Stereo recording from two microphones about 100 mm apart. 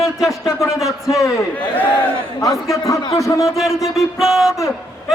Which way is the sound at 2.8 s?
30° left (ahead or behind).